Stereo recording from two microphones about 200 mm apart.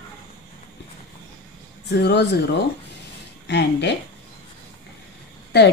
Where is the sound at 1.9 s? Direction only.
55° left (ahead or behind).